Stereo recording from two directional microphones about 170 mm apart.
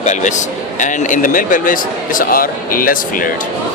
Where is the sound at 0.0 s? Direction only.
45° left (ahead or behind).